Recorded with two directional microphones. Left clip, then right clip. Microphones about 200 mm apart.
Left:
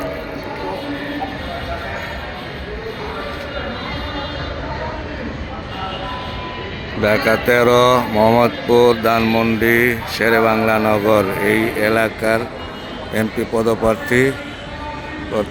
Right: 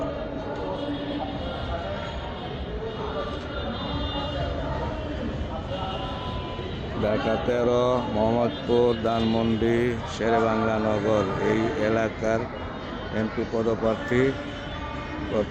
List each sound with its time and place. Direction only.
7.0 s speech: 5° left (ahead or behind)
8.1 s mantra: 25° left (ahead or behind)
8.4 s speech: 5° left (ahead or behind)